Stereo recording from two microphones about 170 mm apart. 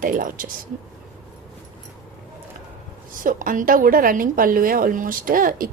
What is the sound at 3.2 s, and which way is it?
A woman's voice, 50° right (ahead or behind).